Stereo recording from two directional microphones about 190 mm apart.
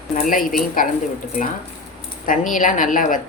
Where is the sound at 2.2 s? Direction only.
45° left (ahead or behind).